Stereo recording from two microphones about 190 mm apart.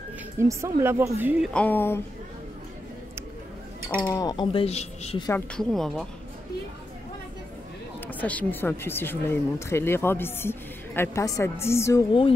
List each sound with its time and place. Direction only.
0.4 s speech: 15° right (ahead or behind)
1.4 s speech: 5° left (ahead or behind)
4.0 s speech: 20° left (ahead or behind)
5.5 s speech: centre (ahead or behind)
8.1 s speech: 10° left (ahead or behind)
12.1 s speech: 30° left (ahead or behind)